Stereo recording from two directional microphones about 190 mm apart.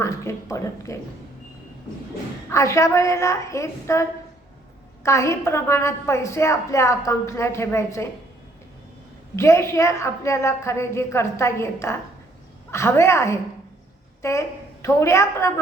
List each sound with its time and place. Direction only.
0.0 s a woman's voice: 15° left (ahead or behind)
2.5 s a woman's voice: 15° left (ahead or behind)
5.0 s a woman's voice: 15° left (ahead or behind)
9.3 s a woman's voice: 15° left (ahead or behind)